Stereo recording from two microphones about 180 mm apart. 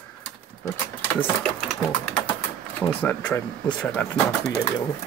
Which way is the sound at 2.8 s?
10° left (ahead or behind).